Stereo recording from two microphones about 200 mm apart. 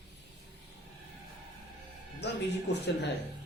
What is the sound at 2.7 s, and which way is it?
Speech, 60° left (ahead or behind).